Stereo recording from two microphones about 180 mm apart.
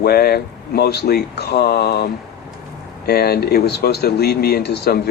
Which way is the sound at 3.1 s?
60° left (ahead or behind).